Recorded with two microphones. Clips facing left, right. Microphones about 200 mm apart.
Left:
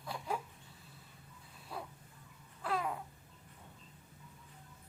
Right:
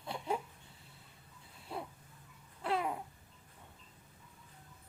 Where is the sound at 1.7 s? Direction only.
25° right (ahead or behind).